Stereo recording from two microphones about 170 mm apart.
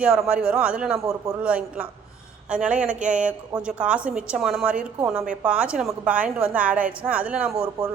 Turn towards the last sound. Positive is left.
turn(degrees=-5)  # may be behind; listen again after turning